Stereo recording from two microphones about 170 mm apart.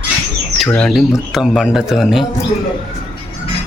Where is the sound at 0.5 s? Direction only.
5° left (ahead or behind).